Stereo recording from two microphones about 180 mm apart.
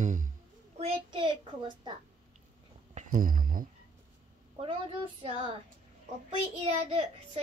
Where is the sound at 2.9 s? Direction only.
45° right (ahead or behind).